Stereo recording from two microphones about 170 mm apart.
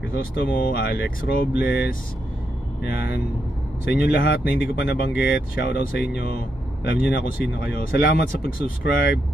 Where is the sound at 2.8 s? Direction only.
65° left (ahead or behind).